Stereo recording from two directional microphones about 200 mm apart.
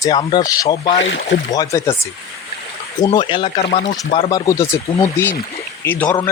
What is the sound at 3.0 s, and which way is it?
Speech, 20° left (ahead or behind).